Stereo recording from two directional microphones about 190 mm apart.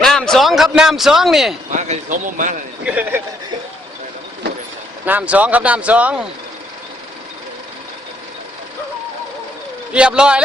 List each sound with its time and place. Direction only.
0.0 s a man's voice: centre (ahead or behind)
1.7 s speech: 40° right (ahead or behind)
2.8 s speech: 10° right (ahead or behind)
5.0 s speech: 10° right (ahead or behind)
9.9 s a man's voice: 5° right (ahead or behind)